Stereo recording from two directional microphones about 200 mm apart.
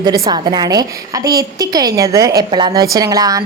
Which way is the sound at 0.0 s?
20° right (ahead or behind).